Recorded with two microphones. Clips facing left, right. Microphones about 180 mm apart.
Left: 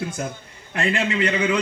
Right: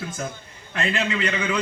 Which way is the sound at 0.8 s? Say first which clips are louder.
Left 3 dB; 25° left (ahead or behind).